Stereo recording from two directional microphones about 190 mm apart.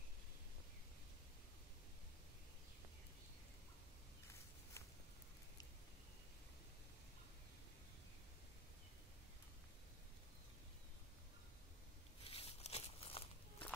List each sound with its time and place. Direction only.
12.2 s walk: 30° left (ahead or behind)